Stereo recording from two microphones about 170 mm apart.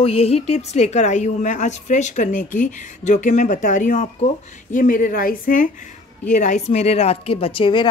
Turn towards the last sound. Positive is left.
turn(degrees=30)  # may be behind; listen again after turning